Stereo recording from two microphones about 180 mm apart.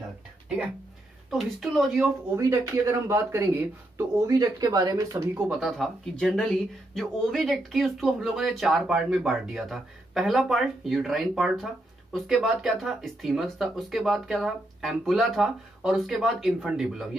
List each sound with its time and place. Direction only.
1.3 s speech: centre (ahead or behind)
2.3 s speech: 15° right (ahead or behind)
5.5 s speech: centre (ahead or behind)